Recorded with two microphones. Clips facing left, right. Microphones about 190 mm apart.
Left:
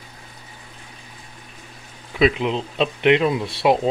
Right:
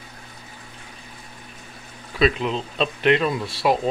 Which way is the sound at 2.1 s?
20° left (ahead or behind).